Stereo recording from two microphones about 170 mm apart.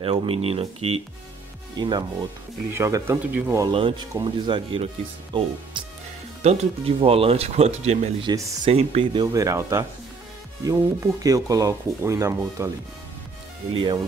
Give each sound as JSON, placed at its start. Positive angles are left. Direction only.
{"t": 0.0, "sound": "speech", "side_deg": -35}
{"t": 3.6, "sound": "speech", "side_deg": -30}
{"t": 6.4, "sound": "speech", "side_deg": -40}
{"t": 8.3, "sound": "speech", "side_deg": -20}
{"t": 8.6, "sound": "speech", "side_deg": -35}